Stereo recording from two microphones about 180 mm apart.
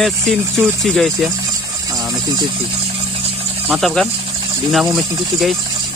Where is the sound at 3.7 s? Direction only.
Centre (ahead or behind).